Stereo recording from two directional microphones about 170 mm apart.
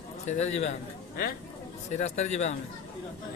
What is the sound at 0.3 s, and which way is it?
Speech, 40° left (ahead or behind).